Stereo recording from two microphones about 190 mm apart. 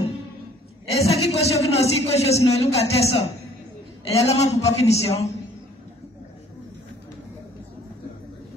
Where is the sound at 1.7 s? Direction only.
35° left (ahead or behind).